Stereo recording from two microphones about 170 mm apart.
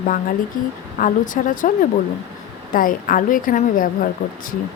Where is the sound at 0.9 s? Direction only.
50° left (ahead or behind).